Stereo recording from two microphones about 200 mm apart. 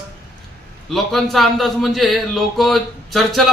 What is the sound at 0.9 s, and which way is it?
A man's voice, centre (ahead or behind).